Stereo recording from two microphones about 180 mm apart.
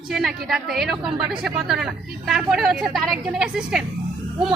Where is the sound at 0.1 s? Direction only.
Centre (ahead or behind).